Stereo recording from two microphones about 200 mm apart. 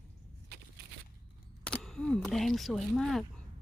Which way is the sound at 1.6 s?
5° left (ahead or behind).